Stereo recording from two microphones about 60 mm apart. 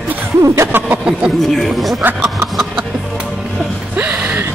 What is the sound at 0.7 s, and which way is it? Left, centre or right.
Speech, right.